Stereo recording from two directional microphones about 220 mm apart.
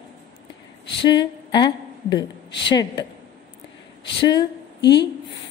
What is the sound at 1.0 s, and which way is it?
A woman's voice, 20° left (ahead or behind).